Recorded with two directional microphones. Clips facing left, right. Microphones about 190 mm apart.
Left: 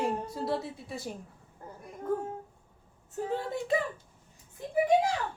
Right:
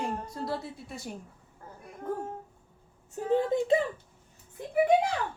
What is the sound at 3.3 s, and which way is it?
Speech, 20° right (ahead or behind).